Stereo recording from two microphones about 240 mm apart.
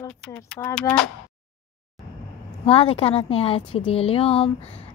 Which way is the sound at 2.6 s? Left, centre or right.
Left.